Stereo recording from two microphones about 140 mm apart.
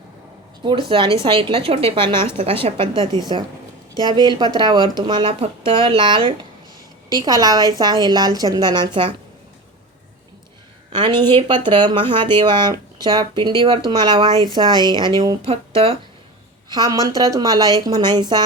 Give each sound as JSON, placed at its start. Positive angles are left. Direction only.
{"t": 0.6, "sound": "a woman's voice", "side_deg": -40}
{"t": 10.9, "sound": "speech", "side_deg": -35}
{"t": 15.4, "sound": "speech", "side_deg": -45}
{"t": 16.6, "sound": "a woman's voice", "side_deg": -25}